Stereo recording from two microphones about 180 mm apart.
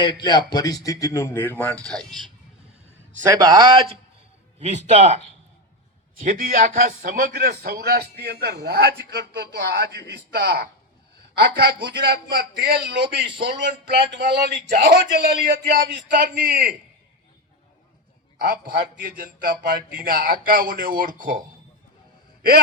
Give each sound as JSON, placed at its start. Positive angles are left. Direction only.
{"t": 0.0, "sound": "a man's voice", "side_deg": 25}
{"t": 3.2, "sound": "a man's voice", "side_deg": -20}
{"t": 4.6, "sound": "speech", "side_deg": -40}
{"t": 6.2, "sound": "a man's voice", "side_deg": -50}
{"t": 16.2, "sound": "speech", "side_deg": -50}
{"t": 18.3, "sound": "speech", "side_deg": -55}